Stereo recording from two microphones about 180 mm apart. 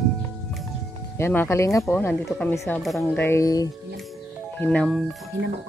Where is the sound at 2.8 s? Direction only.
Centre (ahead or behind).